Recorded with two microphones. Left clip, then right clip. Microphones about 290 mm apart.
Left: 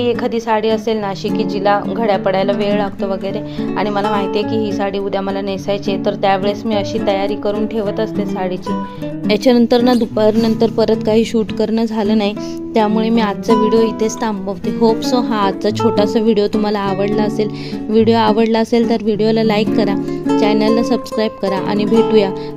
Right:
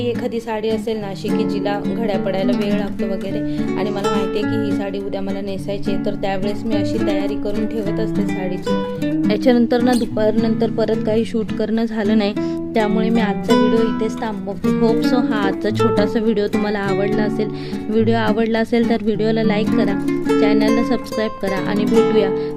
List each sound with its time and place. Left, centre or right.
0.0 s speech: centre
9.2 s speech: centre